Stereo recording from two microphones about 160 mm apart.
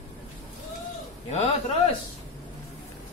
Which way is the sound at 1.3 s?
40° left (ahead or behind).